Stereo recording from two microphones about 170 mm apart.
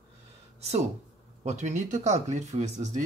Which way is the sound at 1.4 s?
45° right (ahead or behind).